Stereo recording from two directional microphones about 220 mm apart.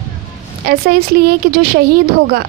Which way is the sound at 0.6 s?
45° right (ahead or behind).